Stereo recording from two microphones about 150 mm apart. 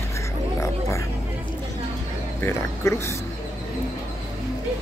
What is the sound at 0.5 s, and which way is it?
Music, 20° left (ahead or behind).